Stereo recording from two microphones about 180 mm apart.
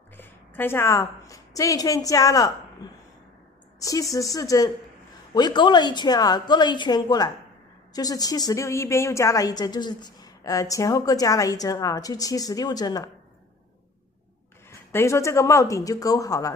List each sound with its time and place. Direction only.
0.2 s a woman's voice: 10° left (ahead or behind)
14.9 s speech: 15° left (ahead or behind)